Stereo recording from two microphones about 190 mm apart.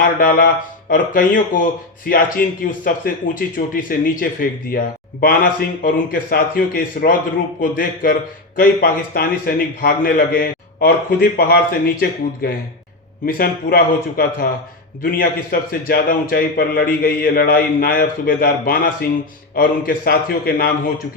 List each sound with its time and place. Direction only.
0.0 s a man's voice: 50° left (ahead or behind)